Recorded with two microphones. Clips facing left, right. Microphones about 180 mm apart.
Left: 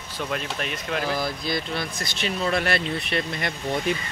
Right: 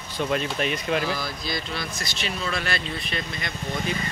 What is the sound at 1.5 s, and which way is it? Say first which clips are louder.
Speech: left 3 dB; 55° left (ahead or behind).